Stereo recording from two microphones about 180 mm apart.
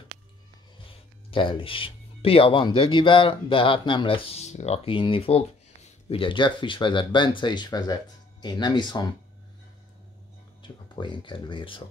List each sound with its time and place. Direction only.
1.3 s speech: 30° left (ahead or behind)
10.6 s speech: 25° left (ahead or behind)